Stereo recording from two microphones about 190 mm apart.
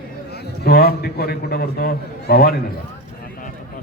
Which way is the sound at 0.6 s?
55° left (ahead or behind).